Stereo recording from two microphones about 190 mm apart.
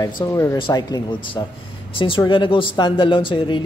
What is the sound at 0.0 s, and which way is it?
Speech, 15° left (ahead or behind).